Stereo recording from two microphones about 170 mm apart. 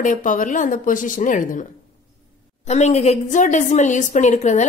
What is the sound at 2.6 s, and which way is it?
A woman's voice, 40° left (ahead or behind).